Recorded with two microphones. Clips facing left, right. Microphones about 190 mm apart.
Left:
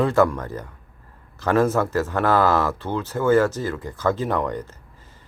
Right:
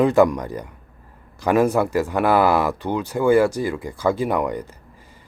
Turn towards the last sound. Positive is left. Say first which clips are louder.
# right 2 dB
turn(degrees=-10)  # may be behind; listen again after turning